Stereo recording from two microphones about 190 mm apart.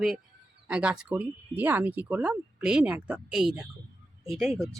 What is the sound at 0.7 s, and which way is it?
Speech, 5° right (ahead or behind).